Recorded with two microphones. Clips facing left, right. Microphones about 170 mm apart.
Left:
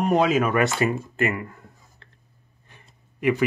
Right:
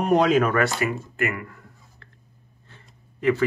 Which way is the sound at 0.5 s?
25° left (ahead or behind).